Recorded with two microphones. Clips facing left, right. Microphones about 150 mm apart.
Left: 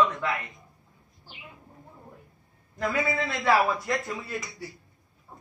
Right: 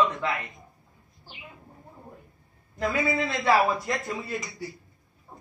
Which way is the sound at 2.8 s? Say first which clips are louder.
Right 1 dB; 15° right (ahead or behind).